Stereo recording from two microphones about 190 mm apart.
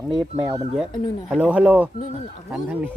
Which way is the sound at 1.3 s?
5° right (ahead or behind).